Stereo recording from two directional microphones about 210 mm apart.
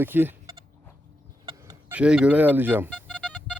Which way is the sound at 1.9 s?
5° right (ahead or behind).